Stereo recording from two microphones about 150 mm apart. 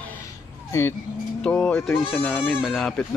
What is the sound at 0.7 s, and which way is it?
Speech, 15° left (ahead or behind).